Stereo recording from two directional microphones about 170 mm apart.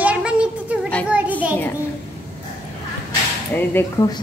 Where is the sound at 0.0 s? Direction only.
5° right (ahead or behind).